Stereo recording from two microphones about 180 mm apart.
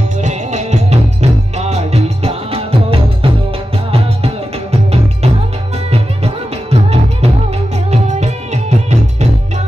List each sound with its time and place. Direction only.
0.2 s music: 40° right (ahead or behind)